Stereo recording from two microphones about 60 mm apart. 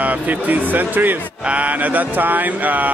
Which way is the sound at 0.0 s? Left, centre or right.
Right.